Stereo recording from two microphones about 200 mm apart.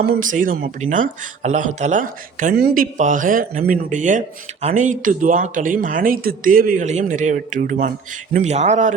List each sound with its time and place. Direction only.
0.0 s speech: 45° right (ahead or behind)